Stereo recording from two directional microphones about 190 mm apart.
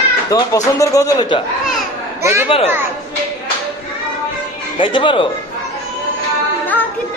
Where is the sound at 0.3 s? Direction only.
20° left (ahead or behind).